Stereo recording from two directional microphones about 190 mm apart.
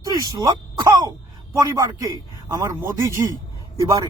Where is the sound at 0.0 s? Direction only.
20° right (ahead or behind).